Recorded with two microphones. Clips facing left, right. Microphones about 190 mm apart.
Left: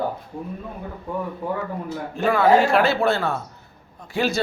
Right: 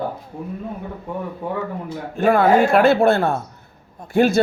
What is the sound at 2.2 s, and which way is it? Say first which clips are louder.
A man's voice: right 2 dB; 55° right (ahead or behind).